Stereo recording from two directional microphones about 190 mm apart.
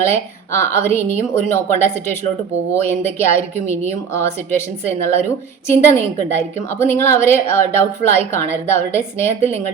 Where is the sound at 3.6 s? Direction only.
15° left (ahead or behind).